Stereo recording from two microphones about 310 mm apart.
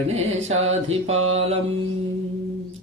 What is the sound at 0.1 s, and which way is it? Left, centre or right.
Mantra, centre.